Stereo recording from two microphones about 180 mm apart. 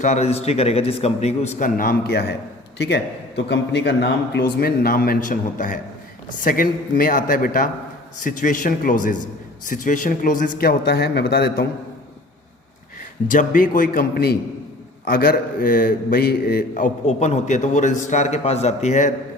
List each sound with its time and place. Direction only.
0.0 s a man's voice: 40° left (ahead or behind)
10.6 s speech: 60° left (ahead or behind)
13.2 s a man's voice: 45° left (ahead or behind)